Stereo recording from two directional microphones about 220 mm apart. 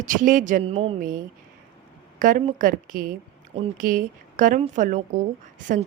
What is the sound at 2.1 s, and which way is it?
A woman's voice, 35° right (ahead or behind).